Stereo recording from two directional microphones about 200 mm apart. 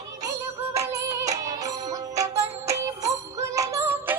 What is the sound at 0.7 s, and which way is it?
Music, 15° right (ahead or behind).